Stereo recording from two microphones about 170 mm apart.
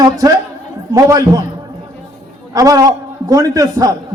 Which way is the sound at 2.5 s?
20° right (ahead or behind).